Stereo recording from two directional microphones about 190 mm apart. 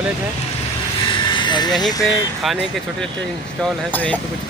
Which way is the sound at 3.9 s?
5° left (ahead or behind).